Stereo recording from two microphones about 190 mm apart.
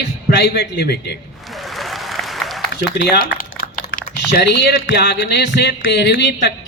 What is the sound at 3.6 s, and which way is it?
Speech, 50° left (ahead or behind).